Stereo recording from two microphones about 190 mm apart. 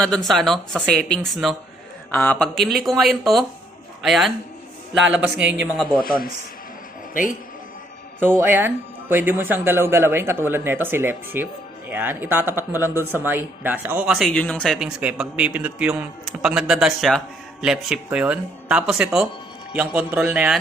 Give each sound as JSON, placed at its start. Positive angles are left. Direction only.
{"t": 0.3, "sound": "speech", "side_deg": 0}
{"t": 6.0, "sound": "a man's voice", "side_deg": 50}
{"t": 8.4, "sound": "speech", "side_deg": -10}